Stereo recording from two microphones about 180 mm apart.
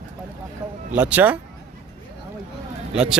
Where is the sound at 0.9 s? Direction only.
10° right (ahead or behind).